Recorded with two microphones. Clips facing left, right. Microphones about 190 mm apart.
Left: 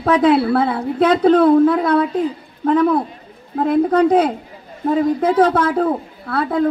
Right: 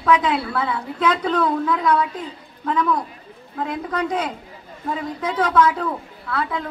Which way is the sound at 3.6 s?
45° left (ahead or behind).